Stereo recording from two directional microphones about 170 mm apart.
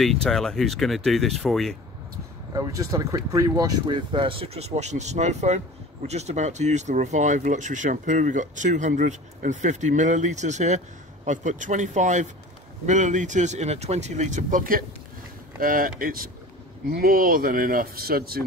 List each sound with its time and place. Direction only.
0.0 s speech: centre (ahead or behind)
2.5 s speech: 20° right (ahead or behind); by 18.4 s 60° right (ahead or behind)